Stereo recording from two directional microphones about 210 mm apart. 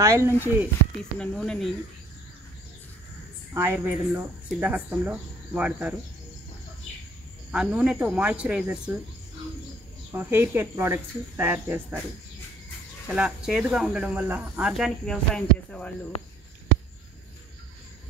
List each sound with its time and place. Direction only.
0.0 s speech: 15° right (ahead or behind)
1.1 s speech: 5° left (ahead or behind)
3.5 s speech: 10° right (ahead or behind)
7.5 s speech: 5° right (ahead or behind)
10.1 s speech: 10° right (ahead or behind)
13.1 s speech: 5° right (ahead or behind)
16.1 s speech: 30° left (ahead or behind)